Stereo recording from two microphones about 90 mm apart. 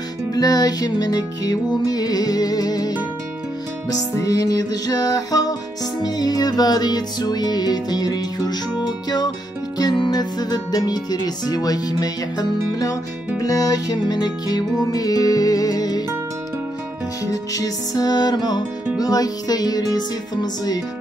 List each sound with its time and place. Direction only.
0.3 s speech: 45° left (ahead or behind)
17.3 s speech: 40° left (ahead or behind)